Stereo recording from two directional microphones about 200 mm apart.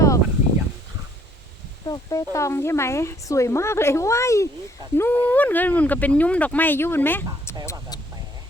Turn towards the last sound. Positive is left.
turn(degrees=10)  # may be behind; listen again after turning